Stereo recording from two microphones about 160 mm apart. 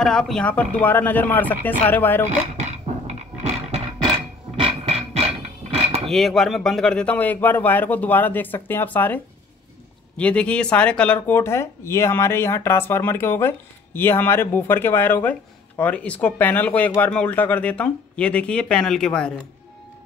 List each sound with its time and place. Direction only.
0.0 s speech: 5° left (ahead or behind)
2.2 s guitar: 45° right (ahead or behind)
4.6 s a sound: 35° right (ahead or behind)
6.0 s speech: centre (ahead or behind)